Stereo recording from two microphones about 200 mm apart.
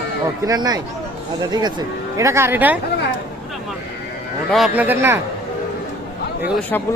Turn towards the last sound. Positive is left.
turn(degrees=10)  # may be behind; listen again after turning